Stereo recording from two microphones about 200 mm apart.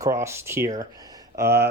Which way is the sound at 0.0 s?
15° right (ahead or behind).